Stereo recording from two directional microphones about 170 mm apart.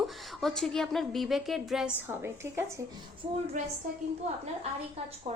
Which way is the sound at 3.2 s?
35° right (ahead or behind).